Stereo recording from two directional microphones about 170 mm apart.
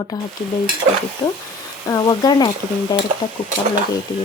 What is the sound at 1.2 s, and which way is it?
Speech, 30° left (ahead or behind).